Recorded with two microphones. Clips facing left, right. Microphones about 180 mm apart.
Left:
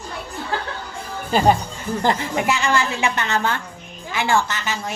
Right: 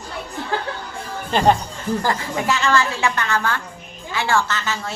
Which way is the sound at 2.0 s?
20° left (ahead or behind).